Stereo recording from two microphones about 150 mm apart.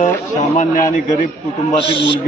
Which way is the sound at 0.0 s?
55° left (ahead or behind).